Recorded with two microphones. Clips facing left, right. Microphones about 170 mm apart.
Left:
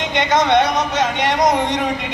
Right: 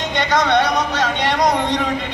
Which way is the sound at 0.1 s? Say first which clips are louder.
Left 2 dB; 20° left (ahead or behind).